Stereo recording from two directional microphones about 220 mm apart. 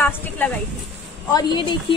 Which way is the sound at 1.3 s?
20° left (ahead or behind).